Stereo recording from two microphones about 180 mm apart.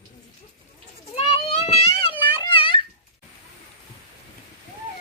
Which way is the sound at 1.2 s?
35° left (ahead or behind).